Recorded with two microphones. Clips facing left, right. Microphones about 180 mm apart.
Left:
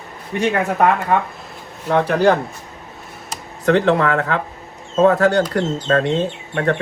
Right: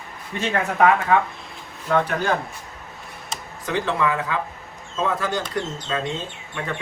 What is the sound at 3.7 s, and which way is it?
Speech, 65° left (ahead or behind).